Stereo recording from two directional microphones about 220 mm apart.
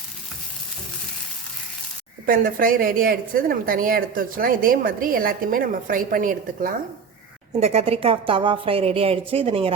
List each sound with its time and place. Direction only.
2.2 s a woman's voice: 40° right (ahead or behind)
7.5 s a woman's voice: 30° right (ahead or behind)